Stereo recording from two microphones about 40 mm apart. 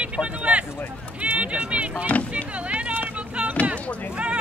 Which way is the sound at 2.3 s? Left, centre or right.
Right.